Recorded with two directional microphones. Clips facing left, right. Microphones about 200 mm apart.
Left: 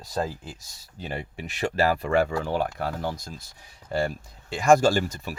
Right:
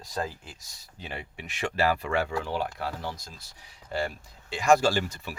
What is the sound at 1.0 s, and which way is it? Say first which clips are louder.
Speech: left 5 dB; 40° left (ahead or behind).